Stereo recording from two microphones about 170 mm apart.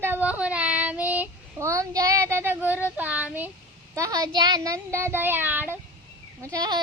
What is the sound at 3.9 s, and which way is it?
Speech, 20° right (ahead or behind).